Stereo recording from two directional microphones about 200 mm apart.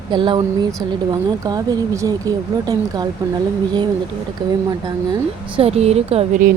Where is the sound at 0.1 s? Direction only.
25° right (ahead or behind).